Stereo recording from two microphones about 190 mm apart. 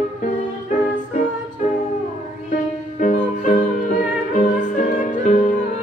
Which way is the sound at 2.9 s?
40° left (ahead or behind).